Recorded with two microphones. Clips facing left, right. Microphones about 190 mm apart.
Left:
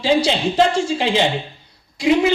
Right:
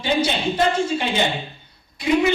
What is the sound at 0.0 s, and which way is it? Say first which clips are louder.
A woman's voice: left 4 dB; 90° left.